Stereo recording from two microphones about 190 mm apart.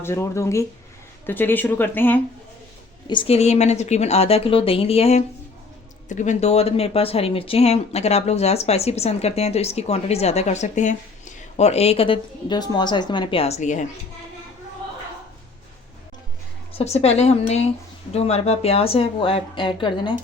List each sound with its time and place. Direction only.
0.0 s speech: 15° left (ahead or behind)
3.1 s speech: 30° left (ahead or behind)
16.7 s speech: 35° left (ahead or behind)